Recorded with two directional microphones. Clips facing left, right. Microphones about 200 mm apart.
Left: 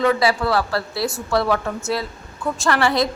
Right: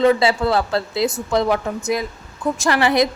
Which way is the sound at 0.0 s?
25° right (ahead or behind).